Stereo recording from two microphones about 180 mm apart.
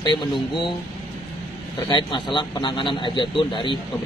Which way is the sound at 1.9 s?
25° left (ahead or behind).